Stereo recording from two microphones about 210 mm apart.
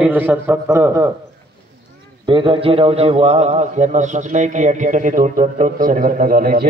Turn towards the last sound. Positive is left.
turn(degrees=-45)  # may be behind; listen again after turning